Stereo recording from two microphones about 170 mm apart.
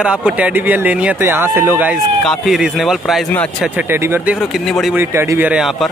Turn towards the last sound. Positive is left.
turn(degrees=-5)  # may be behind; listen again after turning